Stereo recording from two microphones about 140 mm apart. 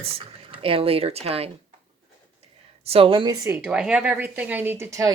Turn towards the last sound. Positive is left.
turn(degrees=-20)  # may be behind; listen again after turning